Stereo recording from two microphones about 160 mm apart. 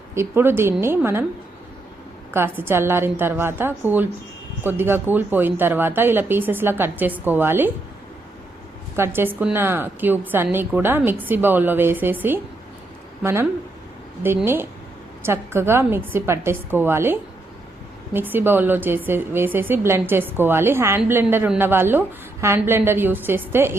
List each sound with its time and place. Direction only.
0.1 s speech: 15° right (ahead or behind)
2.3 s speech: 15° right (ahead or behind)
9.0 s speech: 15° right (ahead or behind)